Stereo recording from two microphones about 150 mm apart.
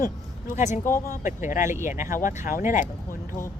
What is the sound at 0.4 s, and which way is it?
Speech, 50° left (ahead or behind).